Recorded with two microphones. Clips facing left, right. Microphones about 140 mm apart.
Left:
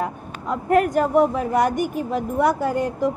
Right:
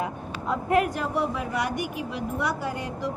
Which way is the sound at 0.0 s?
45° left (ahead or behind).